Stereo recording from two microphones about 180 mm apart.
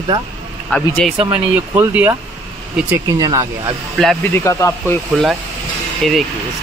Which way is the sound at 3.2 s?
20° right (ahead or behind).